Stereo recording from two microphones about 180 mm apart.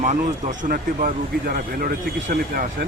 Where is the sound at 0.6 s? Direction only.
50° right (ahead or behind).